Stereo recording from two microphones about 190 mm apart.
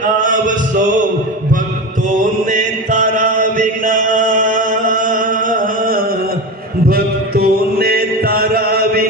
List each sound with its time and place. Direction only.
0.2 s a sound: 45° right (ahead or behind)
2.5 s chant: 40° right (ahead or behind)
6.8 s mantra: 50° right (ahead or behind)